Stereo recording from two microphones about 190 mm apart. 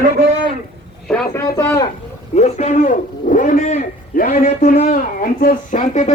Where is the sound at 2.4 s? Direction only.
35° left (ahead or behind).